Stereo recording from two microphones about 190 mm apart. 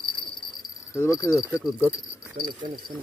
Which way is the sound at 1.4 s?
10° right (ahead or behind).